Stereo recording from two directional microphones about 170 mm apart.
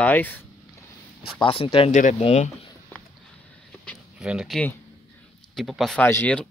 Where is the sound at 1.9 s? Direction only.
50° left (ahead or behind).